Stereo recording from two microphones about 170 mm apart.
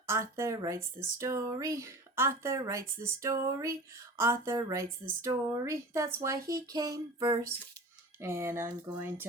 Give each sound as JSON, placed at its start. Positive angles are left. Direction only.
{"t": 0.1, "sound": "speech", "side_deg": -15}
{"t": 6.5, "sound": "a sound", "side_deg": -20}
{"t": 8.2, "sound": "speech", "side_deg": -15}